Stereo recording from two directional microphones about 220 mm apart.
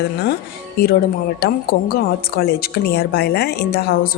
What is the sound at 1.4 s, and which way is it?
A woman's voice, 45° left (ahead or behind).